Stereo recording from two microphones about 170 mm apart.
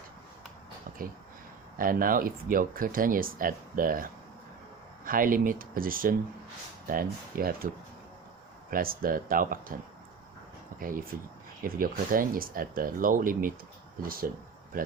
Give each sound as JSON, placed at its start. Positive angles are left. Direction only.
{"t": 0.9, "sound": "a sound", "side_deg": -55}
{"t": 1.8, "sound": "speech", "side_deg": -55}
{"t": 8.7, "sound": "speech", "side_deg": -60}
{"t": 10.8, "sound": "speech", "side_deg": -55}